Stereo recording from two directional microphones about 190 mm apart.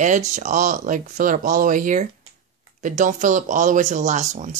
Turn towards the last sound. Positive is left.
turn(degrees=-40)  # may be behind; listen again after turning